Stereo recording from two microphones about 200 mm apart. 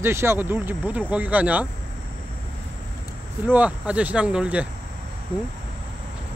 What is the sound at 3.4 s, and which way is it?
Speech, 10° right (ahead or behind).